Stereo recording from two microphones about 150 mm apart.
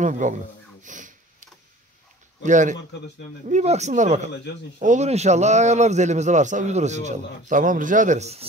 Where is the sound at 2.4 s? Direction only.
55° right (ahead or behind).